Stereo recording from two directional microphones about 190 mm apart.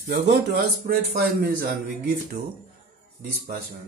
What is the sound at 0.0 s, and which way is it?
Speech, 65° right (ahead or behind).